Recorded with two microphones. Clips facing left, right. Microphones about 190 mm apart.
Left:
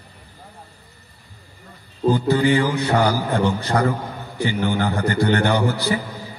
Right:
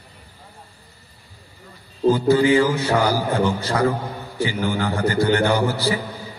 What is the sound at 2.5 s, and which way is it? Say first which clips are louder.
A man's voice: right 1 dB; 35° right (ahead or behind).